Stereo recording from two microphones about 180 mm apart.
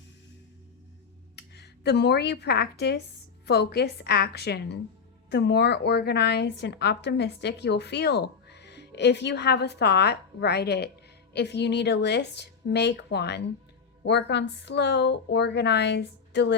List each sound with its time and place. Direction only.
1.4 s a woman's voice: 65° left (ahead or behind)